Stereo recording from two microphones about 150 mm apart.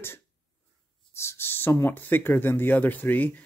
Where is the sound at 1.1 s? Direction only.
15° left (ahead or behind).